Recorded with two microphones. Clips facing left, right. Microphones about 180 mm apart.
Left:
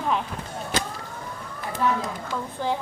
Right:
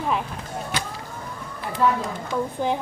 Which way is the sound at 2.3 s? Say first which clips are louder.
Right 5 dB; 15° right (ahead or behind).